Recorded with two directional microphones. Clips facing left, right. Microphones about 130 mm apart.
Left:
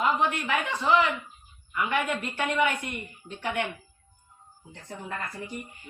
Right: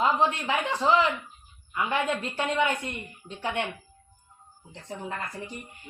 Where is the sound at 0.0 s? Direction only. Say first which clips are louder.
Right 1 dB; 25° right (ahead or behind).